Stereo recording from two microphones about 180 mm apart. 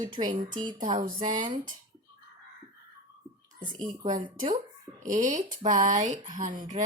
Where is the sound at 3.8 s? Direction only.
45° right (ahead or behind).